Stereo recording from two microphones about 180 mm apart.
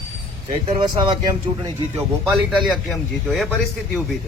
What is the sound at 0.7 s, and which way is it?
Speech, 25° right (ahead or behind).